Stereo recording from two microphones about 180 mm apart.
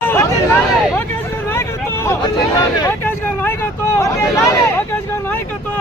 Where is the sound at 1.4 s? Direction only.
15° left (ahead or behind).